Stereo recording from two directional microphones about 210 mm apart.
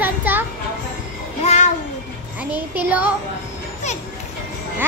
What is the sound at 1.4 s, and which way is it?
Speech, 30° left (ahead or behind).